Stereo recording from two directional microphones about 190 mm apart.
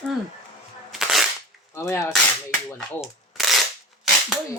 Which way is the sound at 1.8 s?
15° left (ahead or behind).